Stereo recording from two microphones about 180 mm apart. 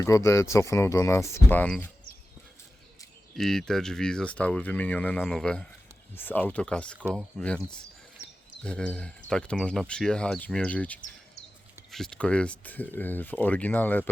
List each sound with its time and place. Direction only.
0.0 s speech: 15° left (ahead or behind)
3.3 s speech: centre (ahead or behind)